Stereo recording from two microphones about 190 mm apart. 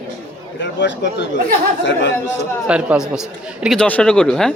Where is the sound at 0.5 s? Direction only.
70° left (ahead or behind).